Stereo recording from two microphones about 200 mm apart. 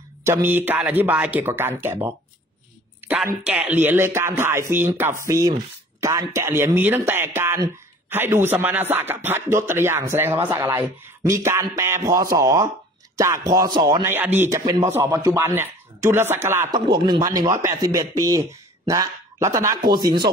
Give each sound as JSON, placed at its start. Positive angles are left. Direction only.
{"t": 0.2, "sound": "speech", "side_deg": -10}